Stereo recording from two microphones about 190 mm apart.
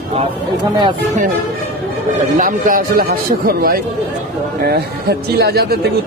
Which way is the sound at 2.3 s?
45° right (ahead or behind).